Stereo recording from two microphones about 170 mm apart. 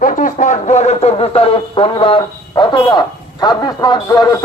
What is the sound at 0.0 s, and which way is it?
Speech, 50° left (ahead or behind).